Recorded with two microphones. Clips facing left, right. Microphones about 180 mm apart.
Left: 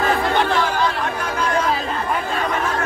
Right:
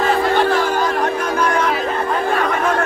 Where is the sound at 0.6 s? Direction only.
45° right (ahead or behind).